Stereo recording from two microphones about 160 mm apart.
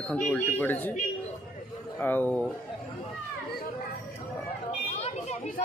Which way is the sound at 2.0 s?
10° left (ahead or behind).